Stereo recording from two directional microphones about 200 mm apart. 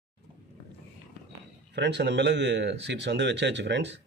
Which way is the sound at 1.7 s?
60° right (ahead or behind).